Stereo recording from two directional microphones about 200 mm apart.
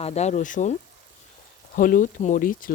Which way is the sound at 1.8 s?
40° left (ahead or behind).